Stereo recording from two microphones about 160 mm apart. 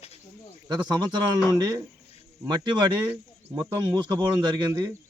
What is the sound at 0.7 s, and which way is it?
Speech, 25° right (ahead or behind).